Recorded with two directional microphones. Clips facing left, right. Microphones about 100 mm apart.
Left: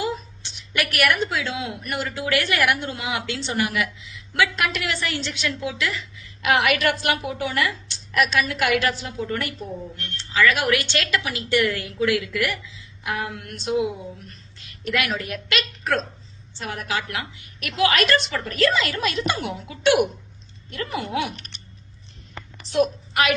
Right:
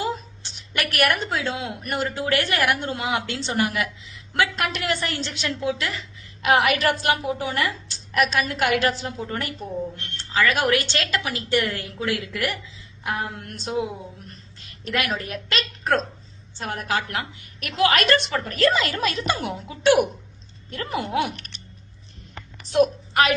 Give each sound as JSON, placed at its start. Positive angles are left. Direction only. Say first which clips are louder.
{"t": 0.0, "sound": "a sound", "louder": "even", "side_deg": -40}
{"t": 0.9, "sound": "a woman's voice", "louder": "even", "side_deg": -40}
{"t": 14.8, "sound": "a woman's voice", "louder": "left 1 dB", "side_deg": -40}
{"t": 22.7, "sound": "a woman's voice", "louder": "right 2 dB", "side_deg": -35}